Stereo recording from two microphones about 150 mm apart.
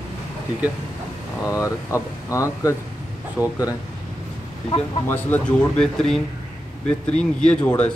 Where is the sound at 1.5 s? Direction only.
20° left (ahead or behind).